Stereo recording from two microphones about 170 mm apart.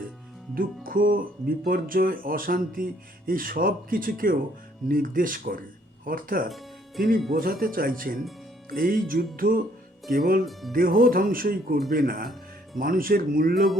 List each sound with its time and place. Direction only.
0.5 s speech: 55° right (ahead or behind)